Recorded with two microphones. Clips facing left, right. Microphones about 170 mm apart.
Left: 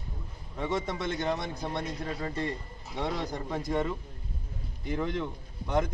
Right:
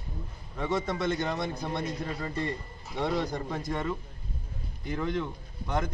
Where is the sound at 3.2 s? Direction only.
15° left (ahead or behind).